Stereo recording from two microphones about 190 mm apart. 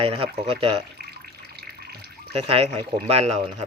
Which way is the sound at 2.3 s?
30° right (ahead or behind).